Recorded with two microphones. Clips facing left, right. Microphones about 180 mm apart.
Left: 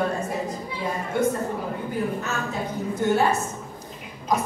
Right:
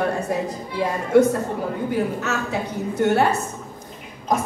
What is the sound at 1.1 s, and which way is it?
A man's voice, 80° right.